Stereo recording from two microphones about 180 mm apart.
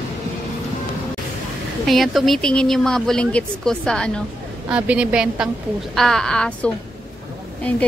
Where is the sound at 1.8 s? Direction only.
Centre (ahead or behind).